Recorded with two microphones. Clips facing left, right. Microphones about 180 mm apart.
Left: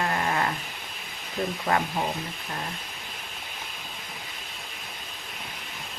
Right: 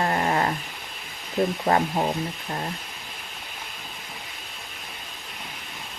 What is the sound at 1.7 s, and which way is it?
Speech, 35° right (ahead or behind).